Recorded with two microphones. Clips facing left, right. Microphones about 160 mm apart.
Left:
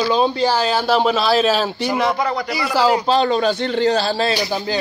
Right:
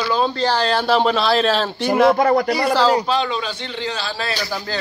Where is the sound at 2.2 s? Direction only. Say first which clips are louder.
Right 6 dB; 50° right (ahead or behind).